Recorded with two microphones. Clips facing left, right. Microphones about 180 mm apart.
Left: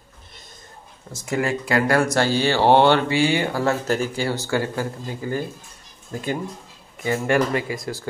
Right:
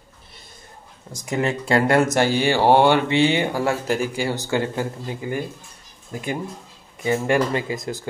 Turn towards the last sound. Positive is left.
turn(degrees=-20)  # may be behind; listen again after turning